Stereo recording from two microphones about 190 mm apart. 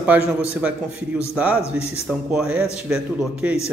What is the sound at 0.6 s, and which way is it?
Speech, 5° right (ahead or behind).